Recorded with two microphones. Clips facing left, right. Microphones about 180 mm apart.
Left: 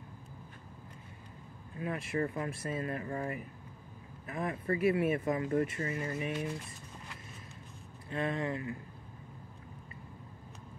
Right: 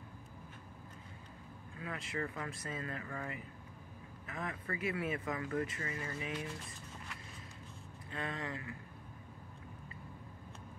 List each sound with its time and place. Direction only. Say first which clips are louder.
1.8 s speech: left 7 dB; 25° left (ahead or behind)
8.1 s speech: left 8 dB; 25° left (ahead or behind)